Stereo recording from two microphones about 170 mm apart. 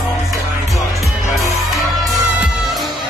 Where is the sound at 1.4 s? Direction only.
20° left (ahead or behind).